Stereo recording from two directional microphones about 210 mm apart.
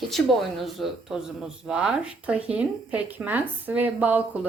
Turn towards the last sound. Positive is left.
turn(degrees=-10)  # may be behind; listen again after turning